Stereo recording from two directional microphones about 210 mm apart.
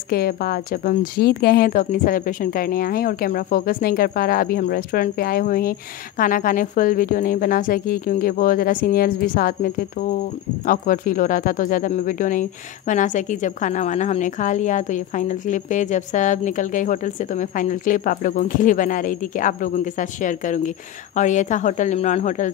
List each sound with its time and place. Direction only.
0.1 s a woman's voice: 45° left (ahead or behind)